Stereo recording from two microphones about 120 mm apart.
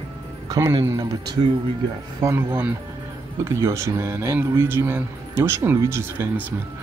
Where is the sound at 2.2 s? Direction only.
15° right (ahead or behind).